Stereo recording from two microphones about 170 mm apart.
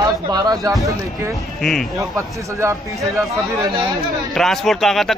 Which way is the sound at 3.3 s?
20° right (ahead or behind).